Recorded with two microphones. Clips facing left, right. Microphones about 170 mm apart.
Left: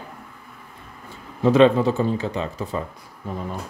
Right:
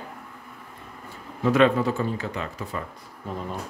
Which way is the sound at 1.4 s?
25° left (ahead or behind).